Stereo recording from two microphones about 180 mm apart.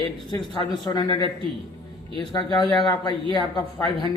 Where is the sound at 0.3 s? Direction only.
25° left (ahead or behind).